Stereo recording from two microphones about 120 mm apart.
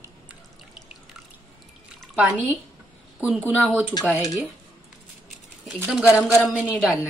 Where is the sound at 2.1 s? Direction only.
10° right (ahead or behind).